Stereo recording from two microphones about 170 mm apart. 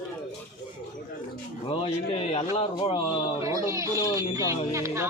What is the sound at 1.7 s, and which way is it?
A man's voice, 35° left (ahead or behind).